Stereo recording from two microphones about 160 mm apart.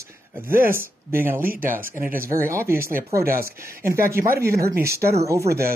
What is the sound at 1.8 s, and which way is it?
Speech, 60° right (ahead or behind).